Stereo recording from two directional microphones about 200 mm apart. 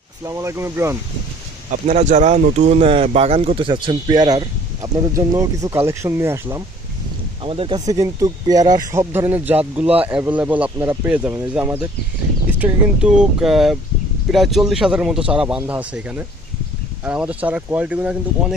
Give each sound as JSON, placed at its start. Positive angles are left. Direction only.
{"t": 0.3, "sound": "speech", "side_deg": -15}
{"t": 1.7, "sound": "speech", "side_deg": -35}
{"t": 7.4, "sound": "speech", "side_deg": -25}